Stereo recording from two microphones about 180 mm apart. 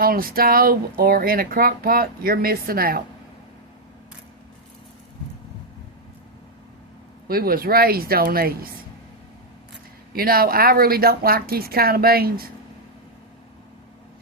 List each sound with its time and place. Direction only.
0.0 s speech: 55° right (ahead or behind)
7.3 s speech: 55° right (ahead or behind)
10.1 s speech: 55° right (ahead or behind)